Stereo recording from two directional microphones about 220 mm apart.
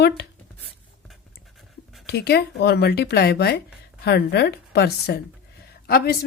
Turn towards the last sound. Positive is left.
turn(degrees=45)  # may be behind; listen again after turning